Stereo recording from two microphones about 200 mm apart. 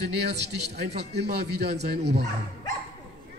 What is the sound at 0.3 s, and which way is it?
Speech, 55° right (ahead or behind).